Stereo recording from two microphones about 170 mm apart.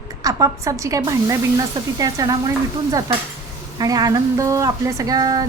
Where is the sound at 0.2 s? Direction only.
20° right (ahead or behind).